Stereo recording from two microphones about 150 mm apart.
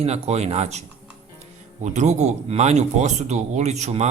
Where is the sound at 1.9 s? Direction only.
50° right (ahead or behind).